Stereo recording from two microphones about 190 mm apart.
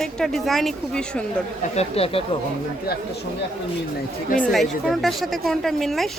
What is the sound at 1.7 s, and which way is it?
Speech, 30° left (ahead or behind).